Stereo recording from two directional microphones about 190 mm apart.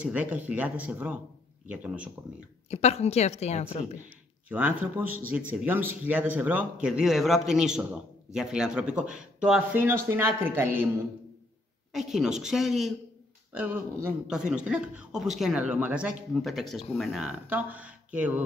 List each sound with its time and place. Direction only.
0.0 s speech: 10° right (ahead or behind)
2.7 s a woman's voice: 35° left (ahead or behind)
4.5 s speech: 10° right (ahead or behind)
11.9 s speech: centre (ahead or behind)